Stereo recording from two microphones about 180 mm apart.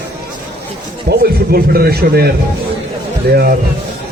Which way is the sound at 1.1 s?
60° right (ahead or behind).